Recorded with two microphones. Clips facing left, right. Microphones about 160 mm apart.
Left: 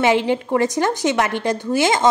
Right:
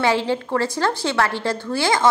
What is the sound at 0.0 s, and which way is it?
A woman's voice, 20° left (ahead or behind).